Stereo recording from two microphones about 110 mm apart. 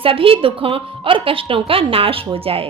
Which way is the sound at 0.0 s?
55° right (ahead or behind).